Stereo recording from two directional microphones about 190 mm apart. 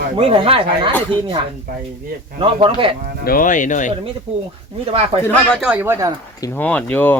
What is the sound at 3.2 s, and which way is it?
Speech, 45° left (ahead or behind).